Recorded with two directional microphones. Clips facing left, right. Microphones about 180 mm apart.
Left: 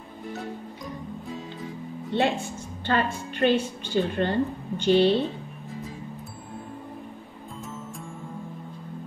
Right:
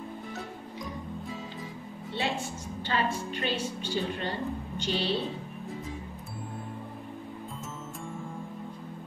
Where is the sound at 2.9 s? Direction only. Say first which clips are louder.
Left 4 dB; 55° left (ahead or behind).